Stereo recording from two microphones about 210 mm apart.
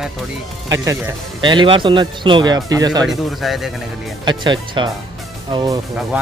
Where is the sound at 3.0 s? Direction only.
Centre (ahead or behind).